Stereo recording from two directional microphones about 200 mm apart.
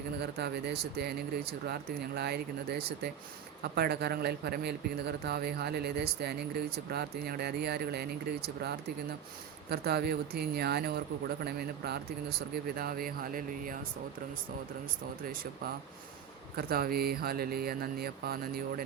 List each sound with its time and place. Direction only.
0.2 s speech: 55° right (ahead or behind)
9.6 s speech: 55° right (ahead or behind)
16.6 s speech: 50° right (ahead or behind)